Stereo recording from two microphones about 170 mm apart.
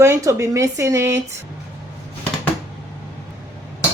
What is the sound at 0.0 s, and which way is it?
Speech, 15° right (ahead or behind).